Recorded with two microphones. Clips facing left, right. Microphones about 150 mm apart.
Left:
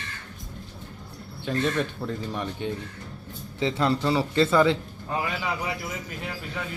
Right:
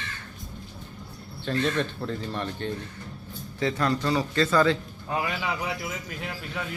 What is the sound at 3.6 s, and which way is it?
Speech, 20° left (ahead or behind).